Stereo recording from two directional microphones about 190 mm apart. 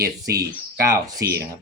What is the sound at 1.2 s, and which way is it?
Speech, 55° right (ahead or behind).